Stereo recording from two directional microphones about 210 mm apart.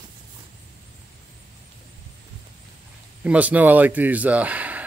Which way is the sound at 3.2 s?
5° right (ahead or behind).